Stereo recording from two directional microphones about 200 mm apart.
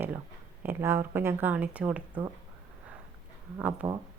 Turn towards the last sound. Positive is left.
turn(degrees=-5)  # may be behind; listen again after turning